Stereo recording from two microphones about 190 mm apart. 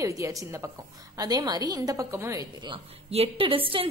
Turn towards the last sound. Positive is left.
turn(degrees=-30)  # may be behind; listen again after turning